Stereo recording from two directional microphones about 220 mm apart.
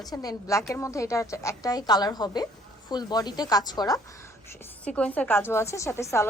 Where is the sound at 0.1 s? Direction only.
15° left (ahead or behind).